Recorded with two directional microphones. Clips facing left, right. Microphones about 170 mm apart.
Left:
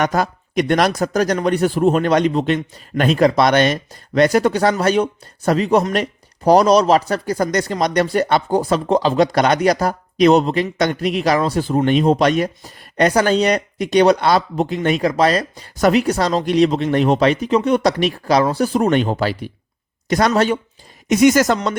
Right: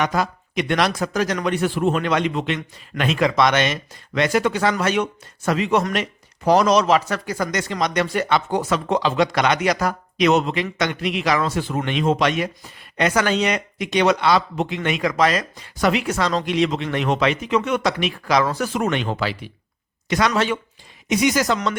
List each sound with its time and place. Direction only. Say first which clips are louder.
0.0 s speech: left 3 dB; 45° left (ahead or behind)